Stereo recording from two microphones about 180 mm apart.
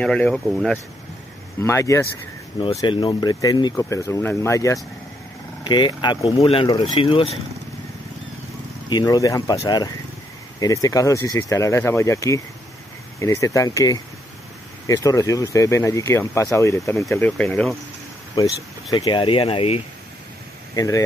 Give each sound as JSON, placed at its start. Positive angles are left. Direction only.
{"t": 0.0, "sound": "speech", "side_deg": 5}
{"t": 1.6, "sound": "speech", "side_deg": 15}
{"t": 8.8, "sound": "speech", "side_deg": 20}
{"t": 18.3, "sound": "speech", "side_deg": 20}
{"t": 20.7, "sound": "speech", "side_deg": 20}